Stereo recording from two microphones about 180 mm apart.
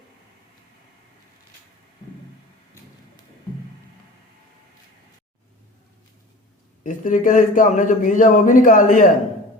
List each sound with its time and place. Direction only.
6.8 s a man's voice: 45° left (ahead or behind)